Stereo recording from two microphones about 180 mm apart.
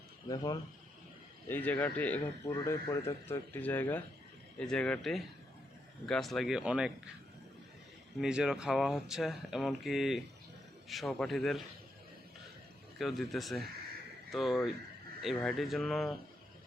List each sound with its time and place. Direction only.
0.3 s speech: 20° left (ahead or behind)
1.5 s speech: 10° left (ahead or behind)
8.2 s speech: 5° right (ahead or behind)
13.0 s speech: centre (ahead or behind)